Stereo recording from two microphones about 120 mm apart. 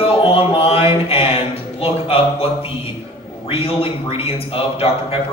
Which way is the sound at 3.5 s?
50° left (ahead or behind).